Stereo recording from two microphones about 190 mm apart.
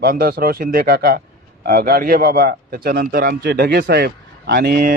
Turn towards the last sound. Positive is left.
turn(degrees=-50)  # may be behind; listen again after turning